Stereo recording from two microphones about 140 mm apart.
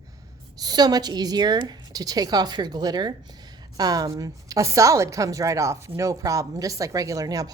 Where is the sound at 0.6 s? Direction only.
30° right (ahead or behind).